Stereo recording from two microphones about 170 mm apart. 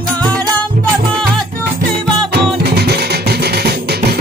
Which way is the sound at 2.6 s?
70° right (ahead or behind).